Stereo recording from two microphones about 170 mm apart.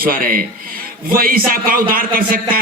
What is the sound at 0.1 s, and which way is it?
A man's voice, 55° right (ahead or behind).